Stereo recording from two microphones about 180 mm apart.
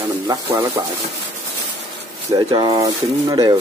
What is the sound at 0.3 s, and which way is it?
Speech, 20° right (ahead or behind).